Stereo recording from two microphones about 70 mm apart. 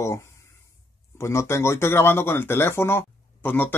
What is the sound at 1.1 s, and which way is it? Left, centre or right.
Speech, left.